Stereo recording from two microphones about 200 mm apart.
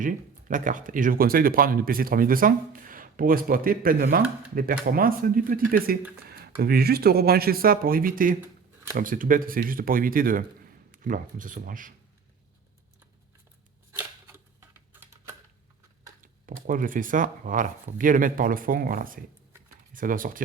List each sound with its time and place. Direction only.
0.0 s speech: 40° right (ahead or behind)
14.0 s a sound: 10° right (ahead or behind)
14.9 s typing: 10° right (ahead or behind)
16.2 s speech: 40° right (ahead or behind)